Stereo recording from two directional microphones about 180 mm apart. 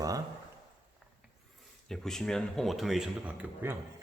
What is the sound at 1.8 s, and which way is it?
Speech, centre (ahead or behind).